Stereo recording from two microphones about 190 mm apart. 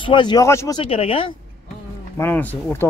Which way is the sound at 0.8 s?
30° left (ahead or behind).